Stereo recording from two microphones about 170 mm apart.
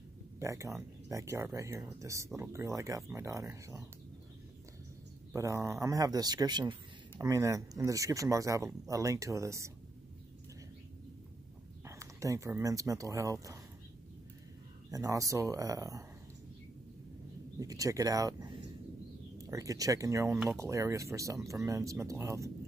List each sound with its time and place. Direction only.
0.4 s speech: 15° right (ahead or behind)
5.3 s speech: 20° right (ahead or behind)
11.8 s speech: 15° right (ahead or behind)
14.9 s speech: 20° right (ahead or behind)
17.6 s speech: 20° right (ahead or behind)